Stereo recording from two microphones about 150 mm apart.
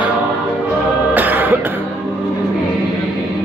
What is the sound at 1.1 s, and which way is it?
Music, 10° right (ahead or behind).